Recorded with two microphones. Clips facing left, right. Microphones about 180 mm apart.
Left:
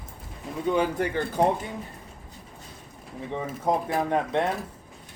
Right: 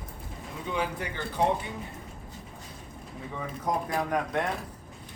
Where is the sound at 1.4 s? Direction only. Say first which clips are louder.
Left 3 dB; 45° left (ahead or behind).